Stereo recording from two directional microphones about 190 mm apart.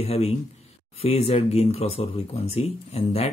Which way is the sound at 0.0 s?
30° left (ahead or behind).